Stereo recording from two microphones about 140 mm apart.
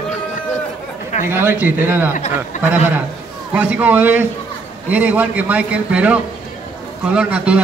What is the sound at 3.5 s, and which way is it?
A man's voice, 10° right (ahead or behind).